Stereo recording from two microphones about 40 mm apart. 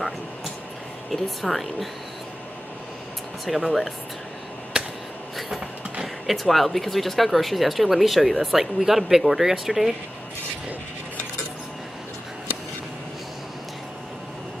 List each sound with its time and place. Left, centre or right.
1.1 s speech: centre
3.4 s speech: centre
4.7 s a sound: right
6.2 s speech: centre